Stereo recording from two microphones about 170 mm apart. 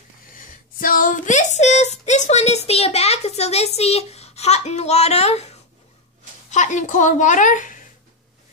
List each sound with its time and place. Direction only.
0.7 s speech: 55° left (ahead or behind); by 5.5 s 40° left (ahead or behind)
6.5 s a woman's voice: 45° left (ahead or behind)